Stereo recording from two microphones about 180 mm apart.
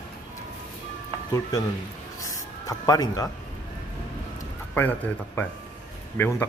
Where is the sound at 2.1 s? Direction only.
20° left (ahead or behind).